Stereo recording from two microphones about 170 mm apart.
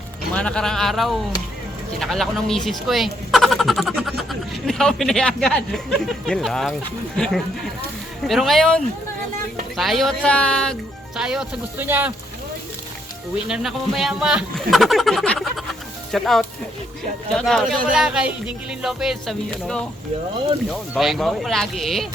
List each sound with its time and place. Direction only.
0.3 s speech: 5° left (ahead or behind); by 12.1 s 10° right (ahead or behind)
13.5 s speech: centre (ahead or behind)